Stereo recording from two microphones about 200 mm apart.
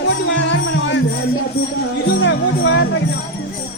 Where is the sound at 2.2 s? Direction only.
65° left (ahead or behind).